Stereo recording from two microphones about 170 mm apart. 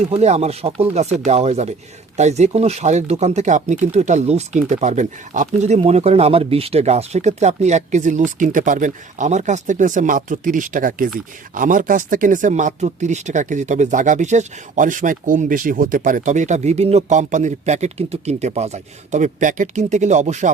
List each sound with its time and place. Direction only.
0.0 s speech: 40° right (ahead or behind)